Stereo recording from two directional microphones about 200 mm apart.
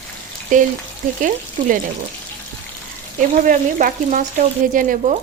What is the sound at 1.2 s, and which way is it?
Frying, 40° right (ahead or behind).